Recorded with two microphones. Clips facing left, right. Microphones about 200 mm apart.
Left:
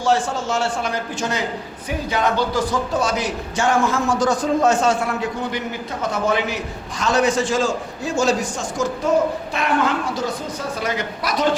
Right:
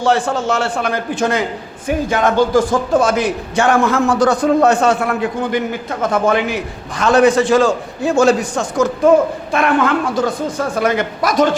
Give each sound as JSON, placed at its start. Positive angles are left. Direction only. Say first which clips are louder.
{"t": 0.0, "sound": "a woman's voice", "louder": "right 4 dB", "side_deg": -60}